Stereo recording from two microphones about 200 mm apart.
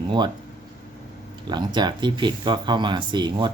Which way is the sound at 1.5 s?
20° right (ahead or behind).